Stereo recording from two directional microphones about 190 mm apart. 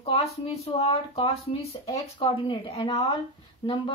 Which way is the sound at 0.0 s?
30° left (ahead or behind).